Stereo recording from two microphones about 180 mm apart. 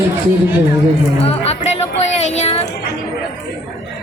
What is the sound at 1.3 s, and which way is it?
Music, 35° left (ahead or behind).